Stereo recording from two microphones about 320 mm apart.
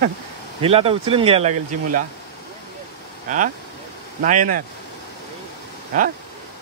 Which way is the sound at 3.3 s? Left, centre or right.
Right.